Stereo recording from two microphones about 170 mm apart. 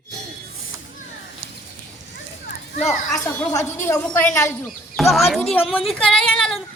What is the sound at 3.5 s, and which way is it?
A woman's voice, 15° left (ahead or behind).